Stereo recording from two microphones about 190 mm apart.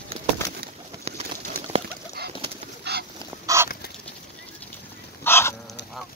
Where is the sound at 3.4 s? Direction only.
15° right (ahead or behind).